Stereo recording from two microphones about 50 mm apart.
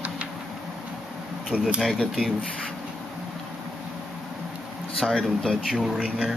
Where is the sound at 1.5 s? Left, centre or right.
Left.